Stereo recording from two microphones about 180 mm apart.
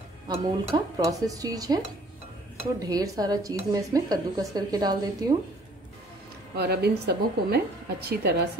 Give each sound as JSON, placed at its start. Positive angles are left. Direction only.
{"t": 0.3, "sound": "a woman's voice", "side_deg": -25}
{"t": 2.8, "sound": "a woman's voice", "side_deg": -20}
{"t": 6.6, "sound": "a woman's voice", "side_deg": -65}